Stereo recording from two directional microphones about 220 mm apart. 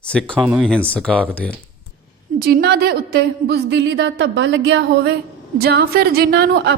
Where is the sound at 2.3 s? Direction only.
45° right (ahead or behind).